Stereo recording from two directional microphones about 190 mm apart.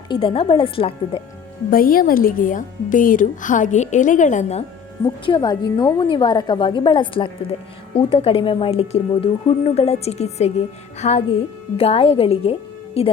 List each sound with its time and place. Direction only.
0.1 s a woman's voice: 30° left (ahead or behind)
1.7 s a woman's voice: 50° left (ahead or behind)
5.0 s a woman's voice: 20° left (ahead or behind)